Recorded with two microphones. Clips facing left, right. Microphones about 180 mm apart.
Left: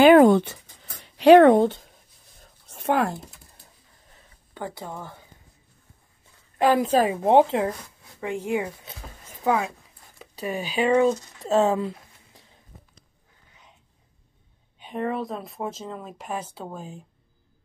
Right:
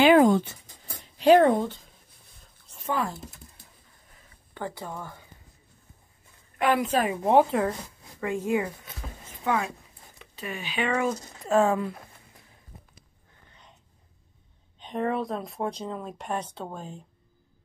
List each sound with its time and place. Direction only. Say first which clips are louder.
0.0 s writing: left 4 dB; 55° left (ahead or behind)
1.0 s speech: left 5 dB; 75° left (ahead or behind)
2.7 s a sound: left 6 dB; 65° left (ahead or behind)
4.6 s speech: left 1 dB; 15° left (ahead or behind)
6.6 s speech: left 4 dB; 30° left (ahead or behind)
10.3 s speech: left 6 dB; 35° left (ahead or behind)
13.5 s a sound: even; 5° left (ahead or behind)
14.8 s speech: even; 5° left (ahead or behind)